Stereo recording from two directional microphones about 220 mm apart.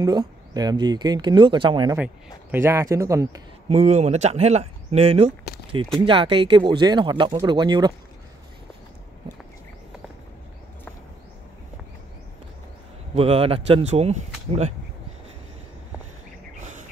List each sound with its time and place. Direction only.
0.0 s a man's voice: 20° right (ahead or behind)
3.6 s speech: 30° right (ahead or behind)
13.1 s speech: 25° right (ahead or behind)
16.5 s chirp: 35° right (ahead or behind)